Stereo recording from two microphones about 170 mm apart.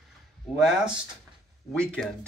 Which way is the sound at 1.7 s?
5° left (ahead or behind).